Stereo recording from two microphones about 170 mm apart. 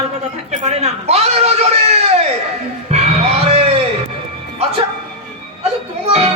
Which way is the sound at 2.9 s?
40° right (ahead or behind).